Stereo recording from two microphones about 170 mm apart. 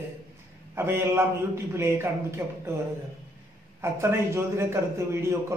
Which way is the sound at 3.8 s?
15° right (ahead or behind).